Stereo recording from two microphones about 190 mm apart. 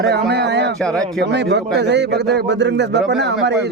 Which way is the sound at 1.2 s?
65° right (ahead or behind).